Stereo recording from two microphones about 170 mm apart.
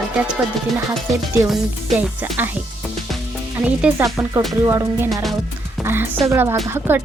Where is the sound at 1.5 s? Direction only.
5° right (ahead or behind).